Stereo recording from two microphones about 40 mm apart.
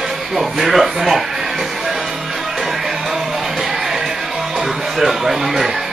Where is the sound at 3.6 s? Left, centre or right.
Centre.